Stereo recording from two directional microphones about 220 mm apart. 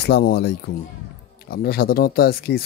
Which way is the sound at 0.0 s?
45° left (ahead or behind).